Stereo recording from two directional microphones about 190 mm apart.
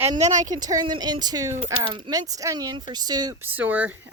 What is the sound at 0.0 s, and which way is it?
Speech, 35° right (ahead or behind).